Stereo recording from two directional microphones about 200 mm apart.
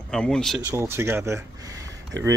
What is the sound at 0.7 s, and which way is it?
Speech, 10° right (ahead or behind).